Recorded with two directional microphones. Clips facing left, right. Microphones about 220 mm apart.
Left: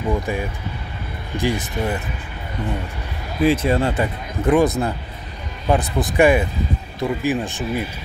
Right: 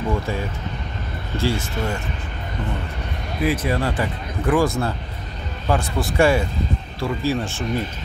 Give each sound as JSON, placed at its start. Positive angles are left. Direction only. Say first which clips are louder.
{"t": 0.1, "sound": "speech", "louder": "left 2 dB", "side_deg": 15}
{"t": 3.4, "sound": "speech", "louder": "left 4 dB", "side_deg": 25}